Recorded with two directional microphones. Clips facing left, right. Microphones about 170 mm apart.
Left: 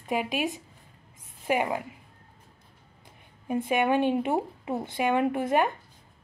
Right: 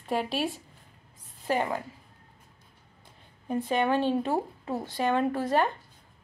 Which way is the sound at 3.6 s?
15° left (ahead or behind).